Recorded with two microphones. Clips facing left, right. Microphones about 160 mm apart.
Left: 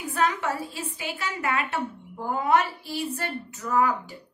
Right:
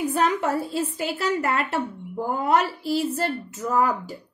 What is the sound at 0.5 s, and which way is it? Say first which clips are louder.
A woman's voice: right 6 dB; 40° right (ahead or behind).